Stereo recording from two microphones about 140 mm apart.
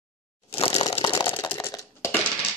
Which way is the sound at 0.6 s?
40° left (ahead or behind).